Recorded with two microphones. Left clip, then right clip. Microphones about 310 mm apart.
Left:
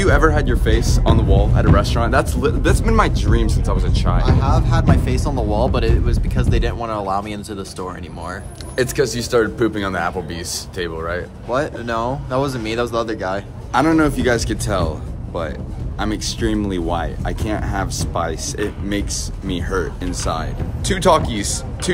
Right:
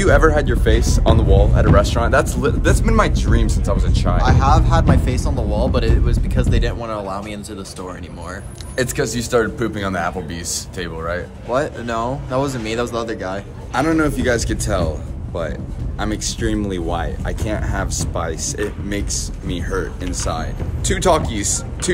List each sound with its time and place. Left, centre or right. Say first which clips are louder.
0.0 s speech: right 2 dB; centre
4.2 s speech: right 6 dB; right
4.6 s a man's voice: right 2 dB; centre
8.7 s a man's voice: left 2 dB; centre